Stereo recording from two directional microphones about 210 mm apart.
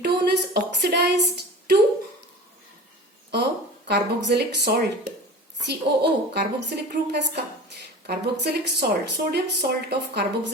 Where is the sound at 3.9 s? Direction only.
50° right (ahead or behind).